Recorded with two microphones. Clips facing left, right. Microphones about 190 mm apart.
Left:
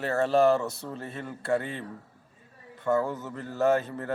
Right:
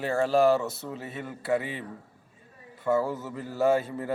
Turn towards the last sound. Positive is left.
turn(degrees=-10)  # may be behind; listen again after turning